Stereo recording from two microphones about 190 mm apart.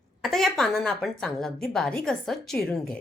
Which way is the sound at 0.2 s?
Centre (ahead or behind).